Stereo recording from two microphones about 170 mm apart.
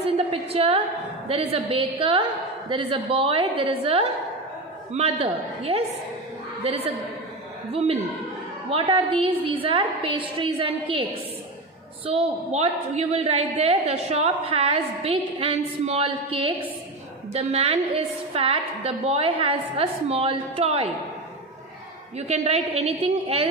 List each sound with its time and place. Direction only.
0.0 s a sound: 35° right (ahead or behind)
1.3 s a woman's voice: 35° right (ahead or behind)
6.6 s a woman's voice: 35° right (ahead or behind)
12.1 s a woman's voice: 40° right (ahead or behind)
22.3 s a woman's voice: 40° right (ahead or behind)